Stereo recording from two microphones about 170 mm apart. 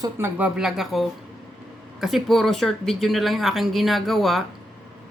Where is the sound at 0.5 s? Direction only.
Centre (ahead or behind).